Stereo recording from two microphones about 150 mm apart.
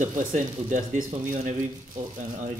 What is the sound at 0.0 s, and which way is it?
Speech, 55° right (ahead or behind).